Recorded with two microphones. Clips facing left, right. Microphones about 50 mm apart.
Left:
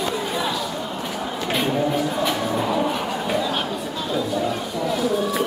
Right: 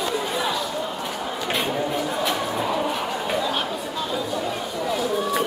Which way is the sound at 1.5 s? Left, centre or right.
Centre.